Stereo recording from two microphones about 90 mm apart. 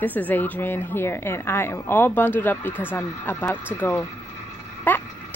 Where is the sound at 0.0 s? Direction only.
20° left (ahead or behind).